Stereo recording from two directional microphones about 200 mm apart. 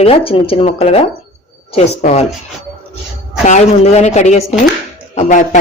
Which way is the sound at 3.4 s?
35° left (ahead or behind).